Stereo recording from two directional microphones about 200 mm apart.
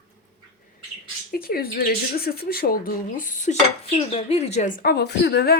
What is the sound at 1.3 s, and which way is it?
Speech, 50° left (ahead or behind).